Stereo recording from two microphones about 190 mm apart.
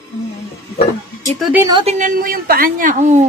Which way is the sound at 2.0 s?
45° right (ahead or behind).